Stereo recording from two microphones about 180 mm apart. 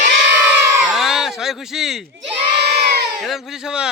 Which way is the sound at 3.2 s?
Centre (ahead or behind).